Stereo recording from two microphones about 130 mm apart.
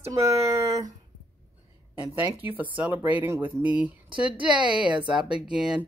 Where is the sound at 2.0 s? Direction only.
10° right (ahead or behind).